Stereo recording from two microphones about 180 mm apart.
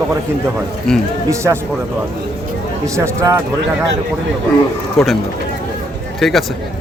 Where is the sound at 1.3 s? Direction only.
15° right (ahead or behind).